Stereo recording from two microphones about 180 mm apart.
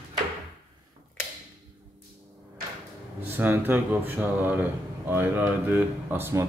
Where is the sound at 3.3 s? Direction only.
10° right (ahead or behind).